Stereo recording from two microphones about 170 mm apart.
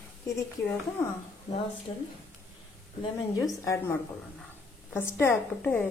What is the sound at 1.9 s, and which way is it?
Speech, 35° left (ahead or behind).